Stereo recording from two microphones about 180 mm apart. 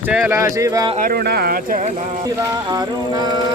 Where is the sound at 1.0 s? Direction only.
55° right (ahead or behind).